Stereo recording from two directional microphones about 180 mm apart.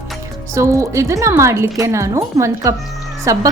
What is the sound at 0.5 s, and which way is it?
A woman's voice, 15° right (ahead or behind).